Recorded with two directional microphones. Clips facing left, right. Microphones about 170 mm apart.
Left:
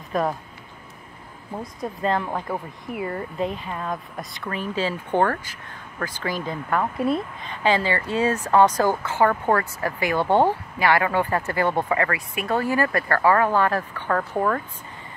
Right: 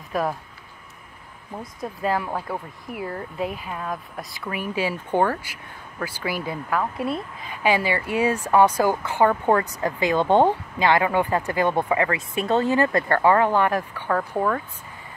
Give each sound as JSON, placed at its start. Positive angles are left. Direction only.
{"t": 0.1, "sound": "speech", "side_deg": -5}
{"t": 1.6, "sound": "speech", "side_deg": 0}
{"t": 14.3, "sound": "speech", "side_deg": 0}